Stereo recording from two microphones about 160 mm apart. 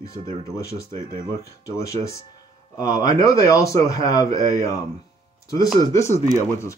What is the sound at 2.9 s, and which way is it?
Speech, 55° right (ahead or behind).